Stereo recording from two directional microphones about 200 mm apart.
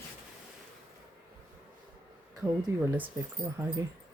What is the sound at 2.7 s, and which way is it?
Speech, 15° right (ahead or behind).